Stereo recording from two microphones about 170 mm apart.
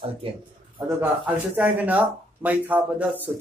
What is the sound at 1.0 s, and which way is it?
Speech, 10° right (ahead or behind).